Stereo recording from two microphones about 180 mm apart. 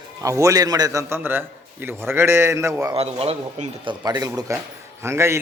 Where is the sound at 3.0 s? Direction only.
35° right (ahead or behind).